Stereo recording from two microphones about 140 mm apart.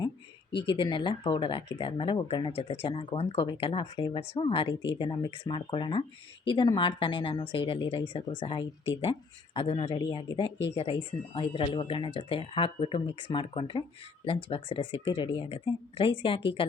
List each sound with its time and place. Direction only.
0.7 s speech: 35° left (ahead or behind)